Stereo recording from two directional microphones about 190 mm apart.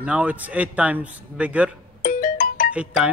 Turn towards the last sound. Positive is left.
turn(degrees=-5)  # may be behind; listen again after turning